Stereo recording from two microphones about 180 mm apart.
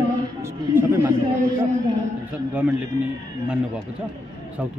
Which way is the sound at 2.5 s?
5° right (ahead or behind).